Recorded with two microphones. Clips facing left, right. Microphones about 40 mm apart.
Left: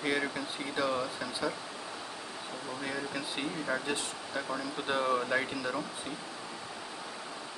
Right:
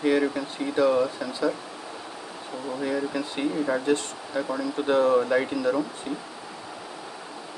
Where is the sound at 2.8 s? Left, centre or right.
Centre.